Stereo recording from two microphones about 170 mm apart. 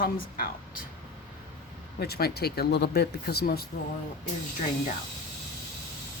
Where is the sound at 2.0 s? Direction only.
65° left (ahead or behind).